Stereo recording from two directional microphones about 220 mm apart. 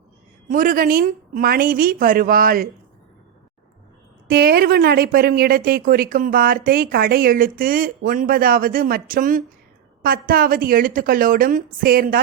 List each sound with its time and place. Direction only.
0.4 s speech: 40° right (ahead or behind)
4.3 s speech: 45° right (ahead or behind)